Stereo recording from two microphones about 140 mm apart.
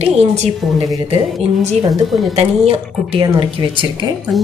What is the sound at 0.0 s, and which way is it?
Speech, 45° right (ahead or behind).